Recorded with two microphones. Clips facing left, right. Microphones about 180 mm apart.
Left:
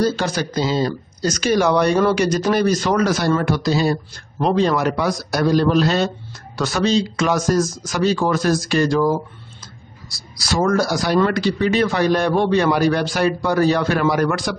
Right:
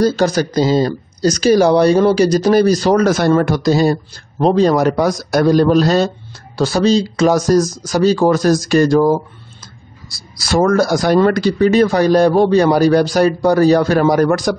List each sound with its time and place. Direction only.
0.0 s speech: 40° right (ahead or behind)
10.3 s speech: 55° right (ahead or behind)